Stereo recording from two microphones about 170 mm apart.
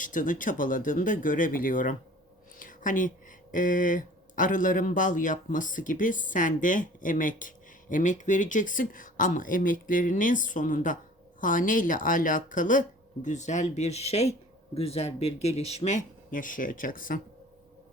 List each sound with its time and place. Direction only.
0.0 s speech: 50° left (ahead or behind)